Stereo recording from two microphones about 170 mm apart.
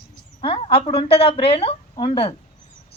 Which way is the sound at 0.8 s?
35° left (ahead or behind).